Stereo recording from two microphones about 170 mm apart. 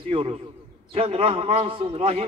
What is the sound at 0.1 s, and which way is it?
A man's voice, 30° right (ahead or behind).